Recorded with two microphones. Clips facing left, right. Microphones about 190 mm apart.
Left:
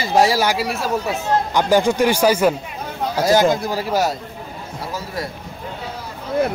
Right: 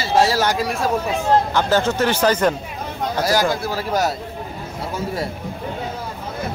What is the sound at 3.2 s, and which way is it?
Speech, 20° left (ahead or behind).